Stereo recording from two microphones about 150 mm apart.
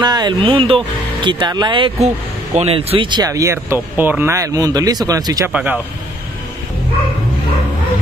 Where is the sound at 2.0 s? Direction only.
45° right (ahead or behind); by 5.5 s 25° right (ahead or behind).